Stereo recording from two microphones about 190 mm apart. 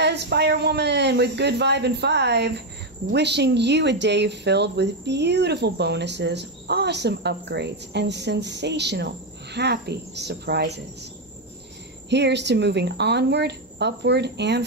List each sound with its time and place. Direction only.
0.0 s speech: 60° right (ahead or behind)
12.1 s speech: 65° right (ahead or behind)